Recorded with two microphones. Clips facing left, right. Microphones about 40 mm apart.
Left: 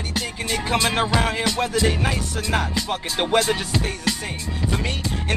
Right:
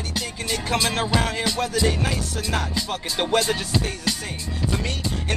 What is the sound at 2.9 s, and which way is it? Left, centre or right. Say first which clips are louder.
Speech: left 1 dB; centre.